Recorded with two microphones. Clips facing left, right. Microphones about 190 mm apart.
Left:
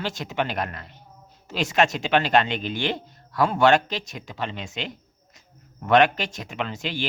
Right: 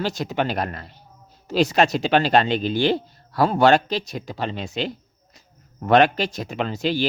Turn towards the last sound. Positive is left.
turn(degrees=-35)  # may be behind; listen again after turning